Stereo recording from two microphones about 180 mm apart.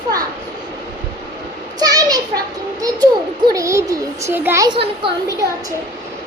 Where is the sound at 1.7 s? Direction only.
20° right (ahead or behind).